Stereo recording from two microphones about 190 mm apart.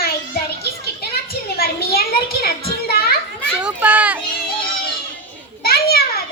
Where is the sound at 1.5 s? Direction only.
55° left (ahead or behind).